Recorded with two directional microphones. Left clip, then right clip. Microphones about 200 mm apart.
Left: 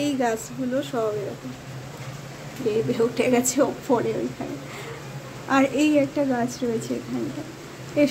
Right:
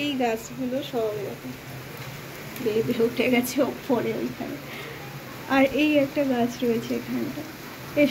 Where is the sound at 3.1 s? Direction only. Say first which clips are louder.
Left 2 dB; 15° left (ahead or behind).